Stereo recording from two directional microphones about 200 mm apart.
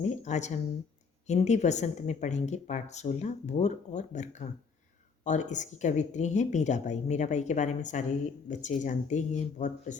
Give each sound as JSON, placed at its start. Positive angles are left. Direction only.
{"t": 0.0, "sound": "a woman's voice", "side_deg": 35}